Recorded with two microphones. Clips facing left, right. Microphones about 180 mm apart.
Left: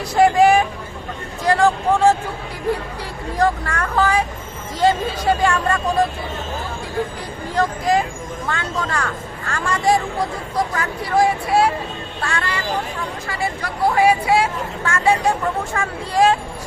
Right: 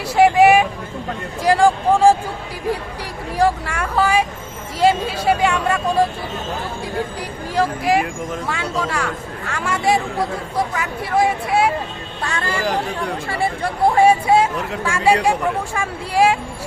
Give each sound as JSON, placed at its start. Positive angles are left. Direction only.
{"t": 0.2, "sound": "vehicle", "side_deg": -5}
{"t": 1.5, "sound": "a sound", "side_deg": -10}
{"t": 3.3, "sound": "speech", "side_deg": -10}
{"t": 7.5, "sound": "speech", "side_deg": -10}
{"t": 11.1, "sound": "speech", "side_deg": 0}
{"t": 12.2, "sound": "speech", "side_deg": -25}
{"t": 14.8, "sound": "speech", "side_deg": -10}